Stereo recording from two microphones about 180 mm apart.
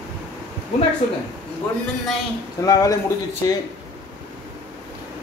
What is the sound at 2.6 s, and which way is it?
Speech, 20° left (ahead or behind).